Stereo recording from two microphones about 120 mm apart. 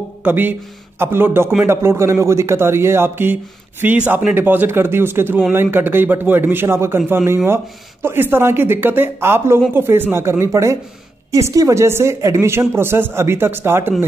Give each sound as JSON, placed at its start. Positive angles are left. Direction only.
{"t": 0.2, "sound": "a man's voice", "side_deg": -15}